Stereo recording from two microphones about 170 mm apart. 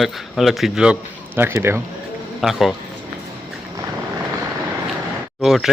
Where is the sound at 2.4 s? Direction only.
Centre (ahead or behind).